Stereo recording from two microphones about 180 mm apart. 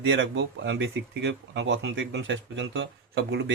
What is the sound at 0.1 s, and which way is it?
Speech, 80° right.